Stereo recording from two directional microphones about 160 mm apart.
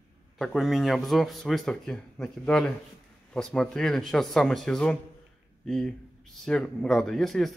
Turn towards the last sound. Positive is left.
turn(degrees=0)  # may be behind; listen again after turning